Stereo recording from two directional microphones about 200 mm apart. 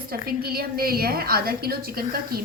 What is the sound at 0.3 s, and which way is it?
A woman's voice, 50° right (ahead or behind).